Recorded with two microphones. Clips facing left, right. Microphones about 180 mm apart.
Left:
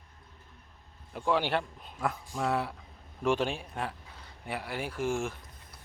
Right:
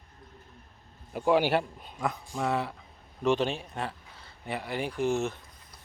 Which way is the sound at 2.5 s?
10° left (ahead or behind).